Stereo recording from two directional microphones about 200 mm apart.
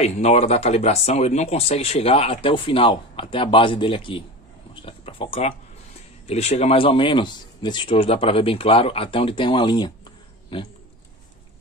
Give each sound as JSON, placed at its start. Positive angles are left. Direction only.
{"t": 0.0, "sound": "speech", "side_deg": 30}